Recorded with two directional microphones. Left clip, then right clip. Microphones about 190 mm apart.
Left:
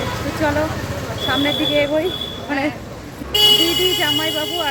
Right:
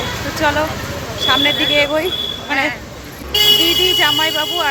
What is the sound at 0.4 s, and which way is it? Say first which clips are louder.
Speech: right 3 dB; 5° left (ahead or behind).